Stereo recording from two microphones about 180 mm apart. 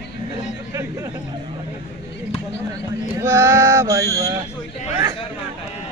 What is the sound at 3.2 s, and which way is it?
Male singing, 15° right (ahead or behind).